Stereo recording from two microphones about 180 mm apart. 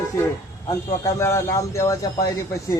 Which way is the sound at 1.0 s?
15° left (ahead or behind).